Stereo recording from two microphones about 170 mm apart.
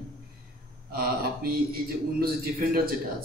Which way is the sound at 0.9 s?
60° right (ahead or behind).